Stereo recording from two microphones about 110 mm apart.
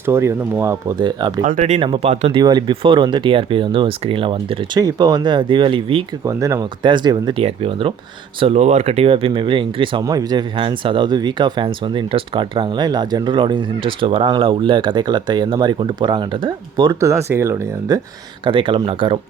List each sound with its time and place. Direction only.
0.0 s speech: 25° right (ahead or behind)
0.9 s speech: 45° right (ahead or behind)
1.5 s speech: 90° right
1.8 s speech: 55° right (ahead or behind)
2.4 s speech: 40° right (ahead or behind)
4.8 s speech: 35° right (ahead or behind); by 6.1 s 55° right (ahead or behind)
6.2 s speech: 30° right (ahead or behind)
6.8 s speech: 45° right (ahead or behind)
7.3 s speech: 60° right (ahead or behind)
8.4 s speech: 80° right; by 10.0 s 50° right (ahead or behind)
10.0 s speech: 35° right (ahead or behind)
17.0 s speech: 25° right (ahead or behind)
18.4 s speech: 50° right (ahead or behind)